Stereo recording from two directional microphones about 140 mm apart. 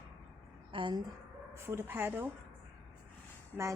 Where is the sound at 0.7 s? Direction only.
35° right (ahead or behind).